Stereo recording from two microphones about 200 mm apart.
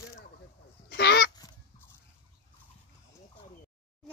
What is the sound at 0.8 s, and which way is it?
Goose, 55° left (ahead or behind).